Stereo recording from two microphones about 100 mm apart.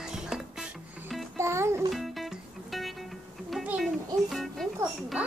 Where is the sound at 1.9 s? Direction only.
Centre (ahead or behind).